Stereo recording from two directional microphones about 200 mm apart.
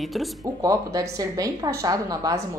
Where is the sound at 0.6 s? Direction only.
15° right (ahead or behind).